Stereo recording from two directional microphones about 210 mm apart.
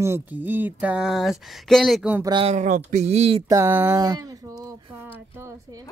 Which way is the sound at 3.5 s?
10° right (ahead or behind).